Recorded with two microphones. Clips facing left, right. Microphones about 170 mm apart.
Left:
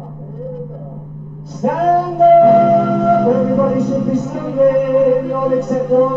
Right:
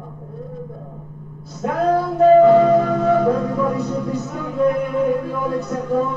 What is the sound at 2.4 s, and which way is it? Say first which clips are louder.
Music: left 3 dB; 50° left (ahead or behind).